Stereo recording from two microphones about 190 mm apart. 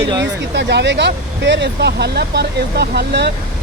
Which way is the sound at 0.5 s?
65° right (ahead or behind).